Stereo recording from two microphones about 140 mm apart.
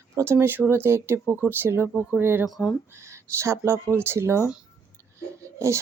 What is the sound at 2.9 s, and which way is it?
Speech, 20° right (ahead or behind).